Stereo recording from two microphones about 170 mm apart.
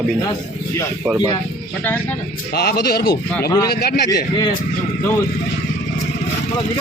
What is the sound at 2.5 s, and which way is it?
A man's voice, 65° left (ahead or behind).